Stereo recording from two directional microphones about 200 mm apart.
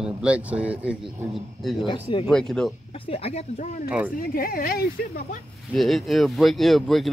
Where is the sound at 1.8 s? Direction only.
25° left (ahead or behind).